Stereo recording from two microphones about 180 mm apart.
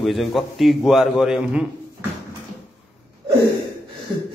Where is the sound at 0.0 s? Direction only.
Centre (ahead or behind).